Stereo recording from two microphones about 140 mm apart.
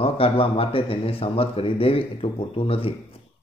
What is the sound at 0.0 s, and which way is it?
Speech, 45° left (ahead or behind).